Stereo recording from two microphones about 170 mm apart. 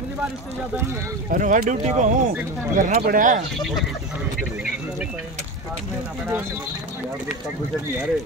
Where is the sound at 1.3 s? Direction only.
55° right (ahead or behind).